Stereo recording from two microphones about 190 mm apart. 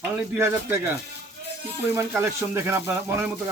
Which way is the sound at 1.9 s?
15° right (ahead or behind).